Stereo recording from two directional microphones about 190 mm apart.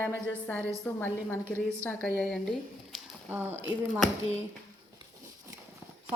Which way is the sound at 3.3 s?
10° right (ahead or behind).